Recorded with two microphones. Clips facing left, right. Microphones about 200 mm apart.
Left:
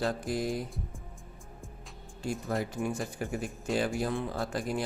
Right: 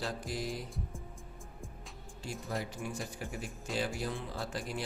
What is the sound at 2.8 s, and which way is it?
Speech, 50° left (ahead or behind).